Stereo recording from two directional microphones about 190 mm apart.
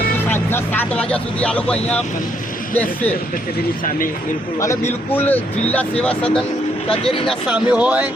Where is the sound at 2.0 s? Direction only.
45° left (ahead or behind).